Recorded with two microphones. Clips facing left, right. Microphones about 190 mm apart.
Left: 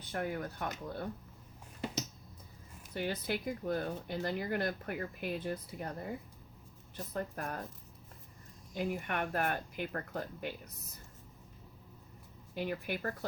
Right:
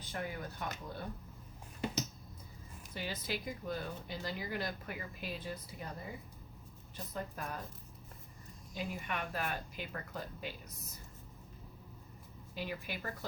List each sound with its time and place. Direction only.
0.1 s speech: 55° left (ahead or behind)
2.9 s speech: 60° left (ahead or behind)
8.7 s speech: 55° left (ahead or behind)
12.5 s speech: 55° left (ahead or behind)